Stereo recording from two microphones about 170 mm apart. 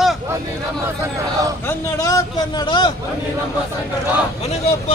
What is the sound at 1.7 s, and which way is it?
Speech, 20° left (ahead or behind).